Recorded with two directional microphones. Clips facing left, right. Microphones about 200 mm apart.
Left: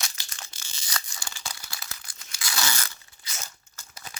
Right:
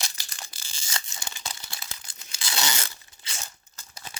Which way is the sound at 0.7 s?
25° right (ahead or behind).